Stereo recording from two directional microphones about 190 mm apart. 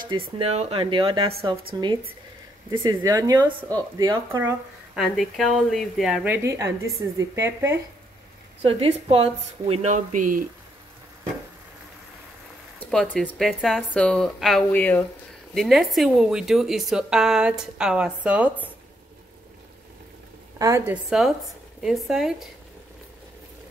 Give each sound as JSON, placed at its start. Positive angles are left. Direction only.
{"t": 0.4, "sound": "speech", "side_deg": -35}
{"t": 2.7, "sound": "speech", "side_deg": -20}
{"t": 4.9, "sound": "a woman's voice", "side_deg": 0}
{"t": 8.6, "sound": "speech", "side_deg": -30}
{"t": 12.9, "sound": "speech", "side_deg": 5}
{"t": 20.5, "sound": "a woman's voice", "side_deg": -15}